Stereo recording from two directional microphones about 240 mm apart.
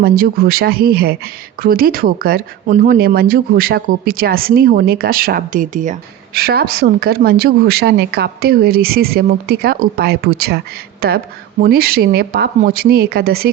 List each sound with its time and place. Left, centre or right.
0.0 s speech: right